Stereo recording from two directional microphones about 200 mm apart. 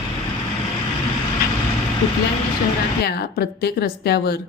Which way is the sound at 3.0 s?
50° left (ahead or behind).